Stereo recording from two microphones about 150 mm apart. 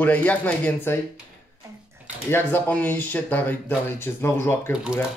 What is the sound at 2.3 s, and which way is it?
Speech, 10° left (ahead or behind).